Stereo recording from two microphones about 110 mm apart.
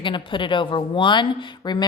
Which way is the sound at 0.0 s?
45° left (ahead or behind).